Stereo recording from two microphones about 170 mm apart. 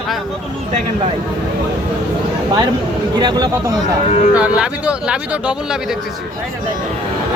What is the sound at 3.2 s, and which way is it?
Speech, 25° right (ahead or behind).